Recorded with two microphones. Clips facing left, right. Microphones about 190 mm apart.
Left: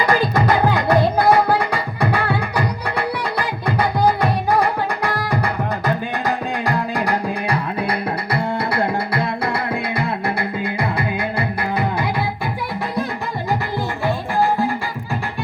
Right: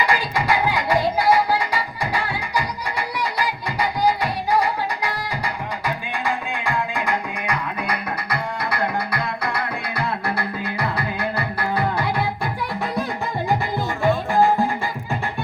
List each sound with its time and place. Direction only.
0.0 s music: 45° left (ahead or behind); by 11.4 s 25° left (ahead or behind)